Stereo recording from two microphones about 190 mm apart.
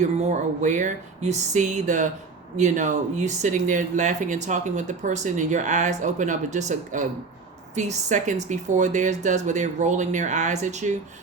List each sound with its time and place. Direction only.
0.0 s speech: 40° right (ahead or behind)